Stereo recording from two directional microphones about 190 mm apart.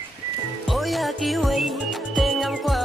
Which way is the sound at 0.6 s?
Centre (ahead or behind).